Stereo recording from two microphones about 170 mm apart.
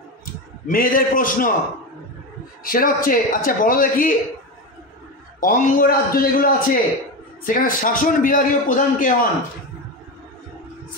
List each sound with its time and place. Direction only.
0.2 s a man's voice: 55° left (ahead or behind)
2.6 s a man's voice: 55° left (ahead or behind)
5.4 s a man's voice: 55° left (ahead or behind)